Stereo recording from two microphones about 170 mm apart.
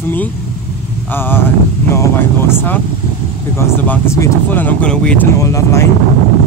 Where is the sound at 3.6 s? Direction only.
15° left (ahead or behind).